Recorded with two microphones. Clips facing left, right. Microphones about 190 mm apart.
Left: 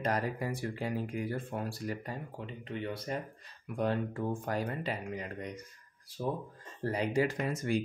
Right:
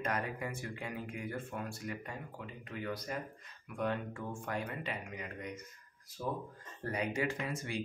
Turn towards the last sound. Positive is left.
turn(degrees=45)  # may be behind; listen again after turning